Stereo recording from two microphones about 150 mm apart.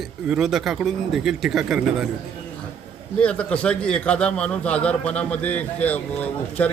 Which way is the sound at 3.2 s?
10° left (ahead or behind).